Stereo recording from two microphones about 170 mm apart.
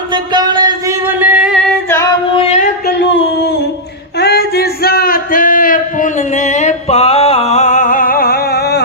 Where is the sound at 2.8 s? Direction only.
90° left.